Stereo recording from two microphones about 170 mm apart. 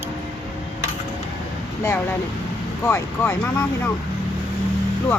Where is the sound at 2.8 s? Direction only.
10° left (ahead or behind).